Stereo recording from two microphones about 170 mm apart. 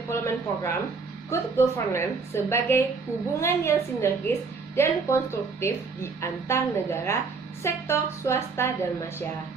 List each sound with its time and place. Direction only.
0.1 s a woman's voice: 15° left (ahead or behind)